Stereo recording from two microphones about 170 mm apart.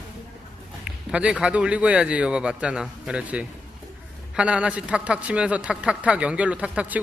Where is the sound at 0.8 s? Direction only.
5° right (ahead or behind).